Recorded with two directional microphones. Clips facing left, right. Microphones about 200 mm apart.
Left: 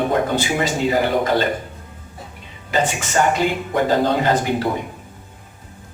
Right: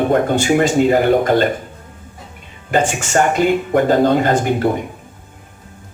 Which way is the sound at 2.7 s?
50° right (ahead or behind).